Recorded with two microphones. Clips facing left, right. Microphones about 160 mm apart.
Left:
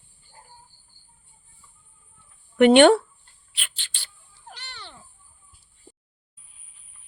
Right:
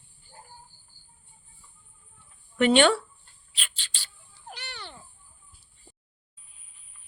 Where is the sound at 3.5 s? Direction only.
60° left (ahead or behind).